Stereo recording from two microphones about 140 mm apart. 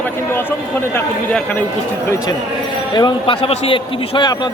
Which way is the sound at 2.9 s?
35° left (ahead or behind).